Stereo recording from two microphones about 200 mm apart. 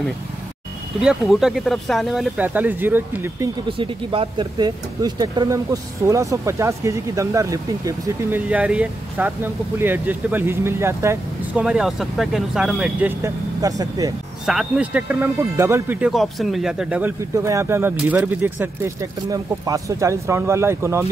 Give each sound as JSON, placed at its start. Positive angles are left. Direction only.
{"t": 1.0, "sound": "speech", "side_deg": 0}
{"t": 3.7, "sound": "speech", "side_deg": -25}
{"t": 13.2, "sound": "speech", "side_deg": -15}
{"t": 14.4, "sound": "speech", "side_deg": 0}